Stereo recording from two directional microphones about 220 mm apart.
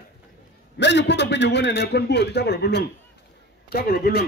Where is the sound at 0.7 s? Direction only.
50° left (ahead or behind).